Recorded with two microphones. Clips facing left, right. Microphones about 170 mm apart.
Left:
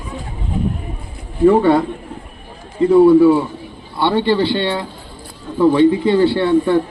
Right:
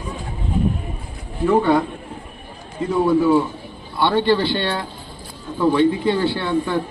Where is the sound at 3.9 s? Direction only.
25° left (ahead or behind).